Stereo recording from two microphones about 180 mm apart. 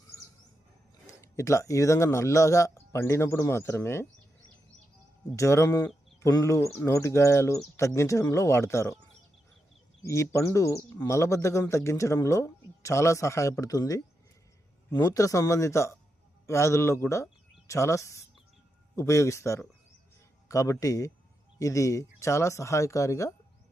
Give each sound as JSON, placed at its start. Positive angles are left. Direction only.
{"t": 1.0, "sound": "speech", "side_deg": 15}
{"t": 5.4, "sound": "a man's voice", "side_deg": 15}
{"t": 10.0, "sound": "a man's voice", "side_deg": 15}